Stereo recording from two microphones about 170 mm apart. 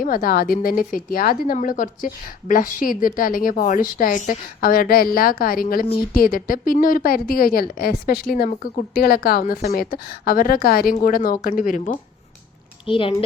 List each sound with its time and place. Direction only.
0.0 s a woman's voice: 55° left (ahead or behind)
8.4 s speech: 45° left (ahead or behind)
9.0 s a woman's voice: 65° left (ahead or behind)
12.8 s speech: 30° left (ahead or behind)